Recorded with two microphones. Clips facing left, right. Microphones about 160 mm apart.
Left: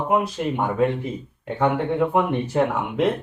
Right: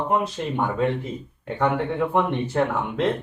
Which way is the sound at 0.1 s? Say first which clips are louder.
Left 2 dB; 10° left (ahead or behind).